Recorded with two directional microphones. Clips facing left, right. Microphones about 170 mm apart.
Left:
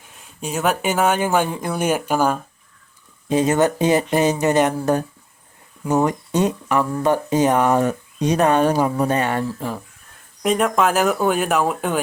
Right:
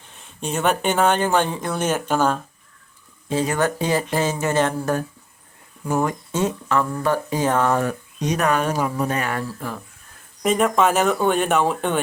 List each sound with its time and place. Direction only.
0.0 s speech: 5° left (ahead or behind)
3.2 s speech: 20° left (ahead or behind)
8.2 s speech: 30° left (ahead or behind)
9.5 s speech: 15° left (ahead or behind)
10.4 s speech: centre (ahead or behind)